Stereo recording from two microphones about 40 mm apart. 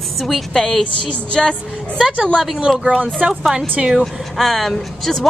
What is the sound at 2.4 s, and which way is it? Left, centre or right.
Speech, centre.